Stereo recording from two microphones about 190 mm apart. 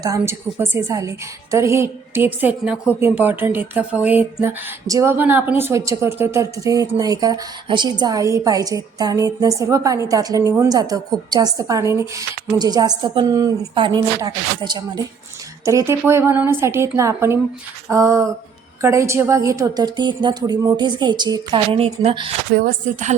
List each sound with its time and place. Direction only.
0.0 s a woman's voice: 15° right (ahead or behind)
22.8 s a woman's voice: 40° right (ahead or behind)